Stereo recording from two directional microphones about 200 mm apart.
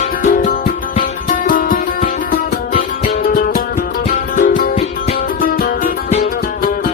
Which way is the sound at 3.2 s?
45° left (ahead or behind).